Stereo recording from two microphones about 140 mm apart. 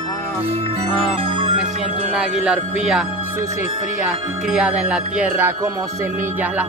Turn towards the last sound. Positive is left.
turn(degrees=-15)  # may be behind; listen again after turning